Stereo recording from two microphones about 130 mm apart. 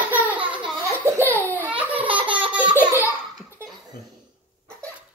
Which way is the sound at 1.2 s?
15° left (ahead or behind).